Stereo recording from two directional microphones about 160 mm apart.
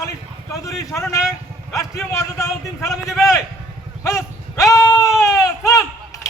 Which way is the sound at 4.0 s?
20° left (ahead or behind).